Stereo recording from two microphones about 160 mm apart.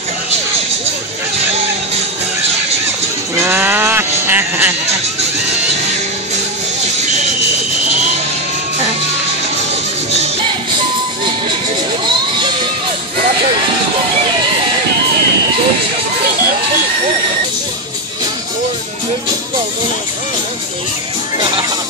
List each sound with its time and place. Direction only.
3.3 s sheep: 10° right (ahead or behind)
21.4 s music: 25° right (ahead or behind)